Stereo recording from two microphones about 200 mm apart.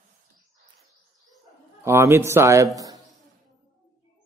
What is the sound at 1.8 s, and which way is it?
A man's voice, 15° right (ahead or behind).